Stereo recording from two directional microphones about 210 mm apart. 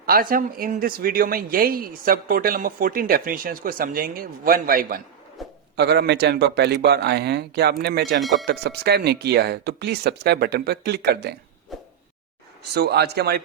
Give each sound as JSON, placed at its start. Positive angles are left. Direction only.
{"t": 0.0, "sound": "speech", "side_deg": -45}
{"t": 5.4, "sound": "bird", "side_deg": 0}
{"t": 5.7, "sound": "speech", "side_deg": -50}
{"t": 8.2, "sound": "speech", "side_deg": 0}
{"t": 8.4, "sound": "speech", "side_deg": -50}
{"t": 11.7, "sound": "a sound", "side_deg": 0}
{"t": 12.7, "sound": "speech", "side_deg": -50}